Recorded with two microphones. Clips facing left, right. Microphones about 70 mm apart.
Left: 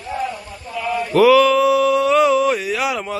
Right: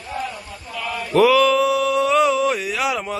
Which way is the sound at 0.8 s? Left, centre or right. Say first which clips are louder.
Left 6 dB; centre.